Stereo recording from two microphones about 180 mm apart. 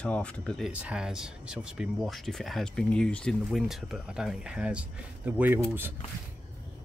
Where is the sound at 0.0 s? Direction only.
5° left (ahead or behind); by 5.9 s 10° right (ahead or behind).